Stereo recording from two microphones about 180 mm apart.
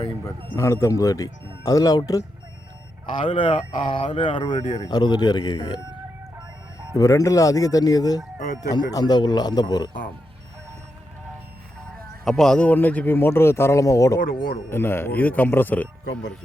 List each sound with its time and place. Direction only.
0.5 s a man's voice: 15° left (ahead or behind)
3.2 s speech: 30° left (ahead or behind)
6.9 s speech: 20° left (ahead or behind)
8.4 s speech: 45° left (ahead or behind)
8.7 s speech: 20° left (ahead or behind)
12.2 s a man's voice: 5° left (ahead or behind)
14.2 s speech: 50° left (ahead or behind)
14.7 s a man's voice: 10° left (ahead or behind)